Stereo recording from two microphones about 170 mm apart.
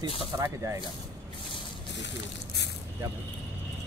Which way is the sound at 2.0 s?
90° left.